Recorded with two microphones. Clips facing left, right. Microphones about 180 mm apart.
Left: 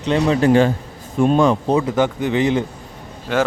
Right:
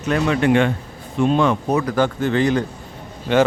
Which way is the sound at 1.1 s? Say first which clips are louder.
Left 2 dB; 45° left (ahead or behind).